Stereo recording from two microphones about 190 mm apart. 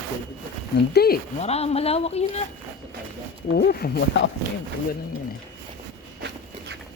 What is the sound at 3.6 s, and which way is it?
Speech, 55° left (ahead or behind).